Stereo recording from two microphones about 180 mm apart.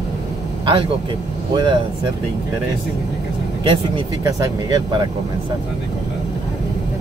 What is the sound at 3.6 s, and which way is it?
Speech, 25° right (ahead or behind).